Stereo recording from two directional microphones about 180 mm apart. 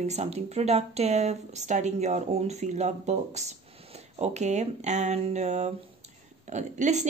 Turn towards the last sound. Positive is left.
turn(degrees=-40)  # may be behind; listen again after turning